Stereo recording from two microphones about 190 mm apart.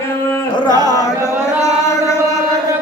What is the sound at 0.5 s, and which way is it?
Music, 20° left (ahead or behind).